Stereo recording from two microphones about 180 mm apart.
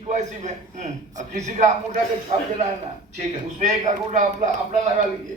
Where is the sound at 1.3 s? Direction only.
40° right (ahead or behind).